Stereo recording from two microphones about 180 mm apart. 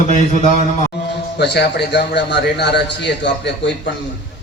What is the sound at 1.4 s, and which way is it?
A man's voice, 70° left (ahead or behind).